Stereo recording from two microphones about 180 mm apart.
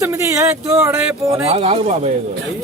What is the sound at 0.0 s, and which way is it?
Speech, 15° right (ahead or behind).